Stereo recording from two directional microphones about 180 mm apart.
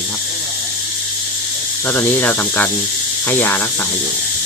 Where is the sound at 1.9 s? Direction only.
10° left (ahead or behind).